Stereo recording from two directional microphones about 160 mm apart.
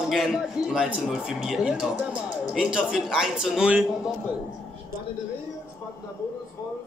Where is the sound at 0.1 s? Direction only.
5° right (ahead or behind).